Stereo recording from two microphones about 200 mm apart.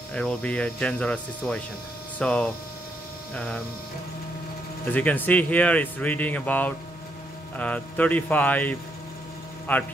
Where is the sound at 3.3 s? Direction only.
5° left (ahead or behind).